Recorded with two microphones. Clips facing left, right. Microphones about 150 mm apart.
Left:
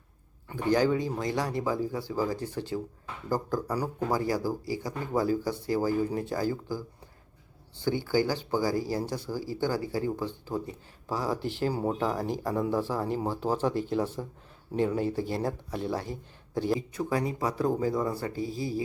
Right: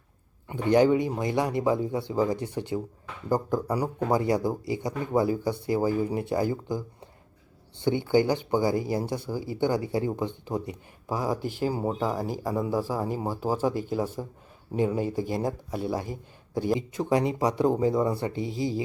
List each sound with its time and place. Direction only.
0.4 s a man's voice: 20° right (ahead or behind)
7.9 s speech: 20° right (ahead or behind)
17.0 s speech: 25° right (ahead or behind)